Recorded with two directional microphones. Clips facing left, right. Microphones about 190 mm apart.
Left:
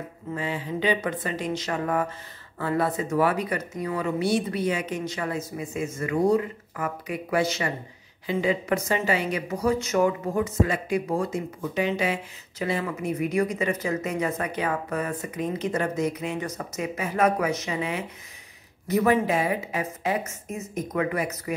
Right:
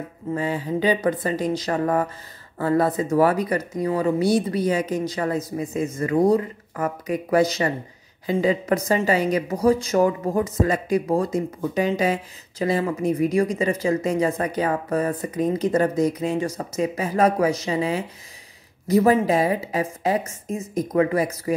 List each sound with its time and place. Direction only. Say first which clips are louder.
0.3 s speech: right 6 dB; 40° right (ahead or behind)